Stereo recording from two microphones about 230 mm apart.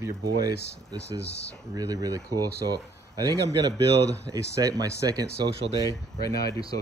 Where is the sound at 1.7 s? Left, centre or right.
Centre.